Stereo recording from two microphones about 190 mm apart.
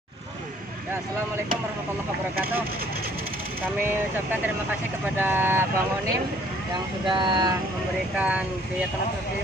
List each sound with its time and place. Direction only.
5.2 s speech: 10° right (ahead or behind)
7.1 s speech: 25° right (ahead or behind)
8.2 s speech: 5° right (ahead or behind)